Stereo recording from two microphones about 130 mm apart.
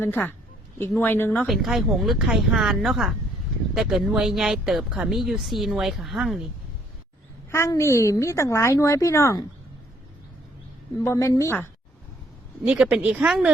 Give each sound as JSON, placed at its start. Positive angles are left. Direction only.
{"t": 0.0, "sound": "speech", "side_deg": 15}
{"t": 1.5, "sound": "speech", "side_deg": 0}
{"t": 7.5, "sound": "a woman's voice", "side_deg": 20}
{"t": 11.0, "sound": "a woman's voice", "side_deg": 25}
{"t": 12.6, "sound": "speech", "side_deg": -10}